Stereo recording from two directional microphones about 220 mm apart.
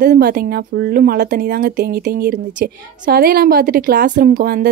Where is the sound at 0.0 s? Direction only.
40° right (ahead or behind).